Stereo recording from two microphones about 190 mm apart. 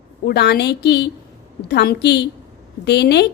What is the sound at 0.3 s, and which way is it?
A woman's voice, 60° left (ahead or behind).